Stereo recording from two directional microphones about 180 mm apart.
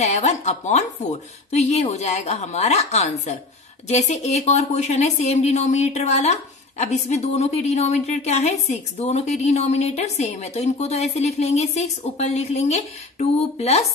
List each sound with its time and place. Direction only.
0.0 s a woman's voice: 40° left (ahead or behind)